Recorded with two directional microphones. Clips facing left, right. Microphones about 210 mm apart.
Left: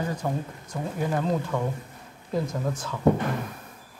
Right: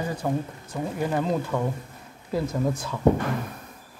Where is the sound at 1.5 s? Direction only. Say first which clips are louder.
Right 1 dB; centre (ahead or behind).